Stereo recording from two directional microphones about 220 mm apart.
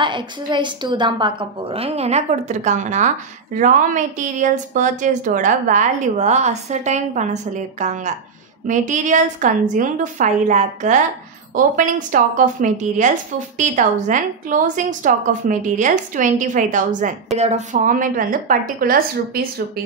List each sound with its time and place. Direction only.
0.0 s a woman's voice: 20° right (ahead or behind); by 19.4 s 40° right (ahead or behind)